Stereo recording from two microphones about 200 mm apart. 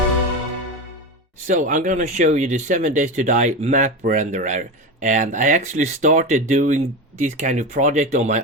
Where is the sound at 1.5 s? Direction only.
40° right (ahead or behind).